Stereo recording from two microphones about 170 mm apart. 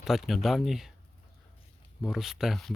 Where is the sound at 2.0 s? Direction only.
Centre (ahead or behind).